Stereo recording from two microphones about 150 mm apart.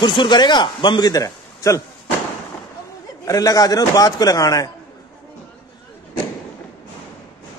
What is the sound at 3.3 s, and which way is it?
A man's voice, 25° left (ahead or behind).